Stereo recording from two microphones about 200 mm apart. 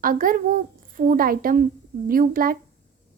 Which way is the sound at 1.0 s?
45° right (ahead or behind).